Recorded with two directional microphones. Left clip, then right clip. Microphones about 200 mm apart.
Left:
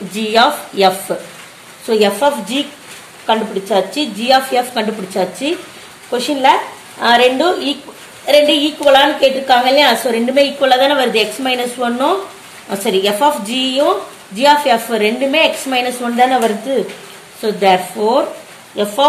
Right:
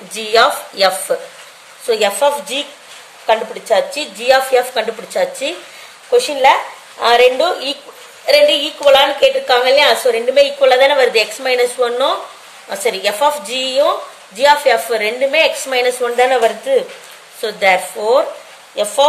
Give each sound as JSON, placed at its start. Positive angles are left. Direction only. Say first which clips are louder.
{"t": 0.1, "sound": "a woman's voice", "louder": "even", "side_deg": -25}